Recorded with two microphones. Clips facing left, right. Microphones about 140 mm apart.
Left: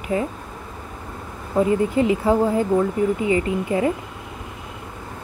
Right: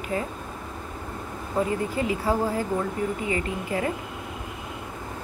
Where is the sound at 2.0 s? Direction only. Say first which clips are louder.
Left 6 dB; 25° left (ahead or behind).